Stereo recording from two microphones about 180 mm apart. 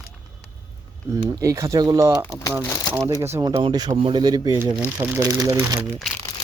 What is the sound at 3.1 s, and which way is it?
Speech, 15° right (ahead or behind).